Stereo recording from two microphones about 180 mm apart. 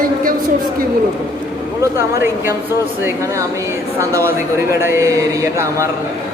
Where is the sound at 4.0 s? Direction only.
15° right (ahead or behind).